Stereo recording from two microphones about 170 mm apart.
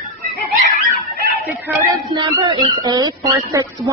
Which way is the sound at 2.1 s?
25° right (ahead or behind).